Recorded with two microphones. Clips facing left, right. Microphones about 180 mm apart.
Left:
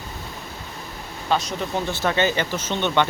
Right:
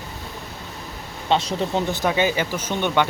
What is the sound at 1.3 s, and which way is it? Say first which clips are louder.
Speech: right 3 dB; 30° right (ahead or behind).